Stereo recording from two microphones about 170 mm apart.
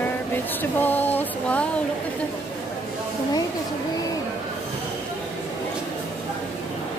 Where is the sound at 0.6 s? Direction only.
10° left (ahead or behind).